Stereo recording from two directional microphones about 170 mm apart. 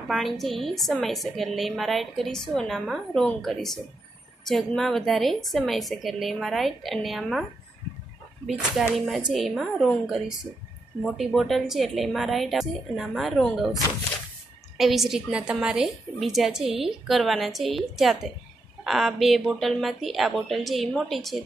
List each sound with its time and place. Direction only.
0.1 s a woman's voice: centre (ahead or behind)
8.5 s a woman's voice: centre (ahead or behind)
11.1 s a woman's voice: centre (ahead or behind)
14.8 s a woman's voice: centre (ahead or behind)